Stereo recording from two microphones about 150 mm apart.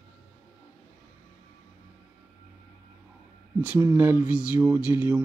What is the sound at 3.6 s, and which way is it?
Speech, 10° right (ahead or behind).